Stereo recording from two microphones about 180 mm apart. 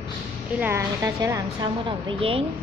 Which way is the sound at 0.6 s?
15° right (ahead or behind).